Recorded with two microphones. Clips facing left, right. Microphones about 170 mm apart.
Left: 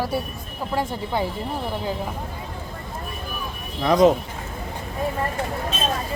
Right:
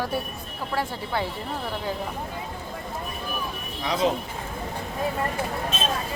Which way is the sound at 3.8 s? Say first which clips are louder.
Left 8 dB; 45° left (ahead or behind).